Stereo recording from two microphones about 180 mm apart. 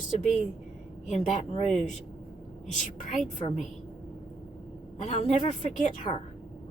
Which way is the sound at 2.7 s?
40° left (ahead or behind).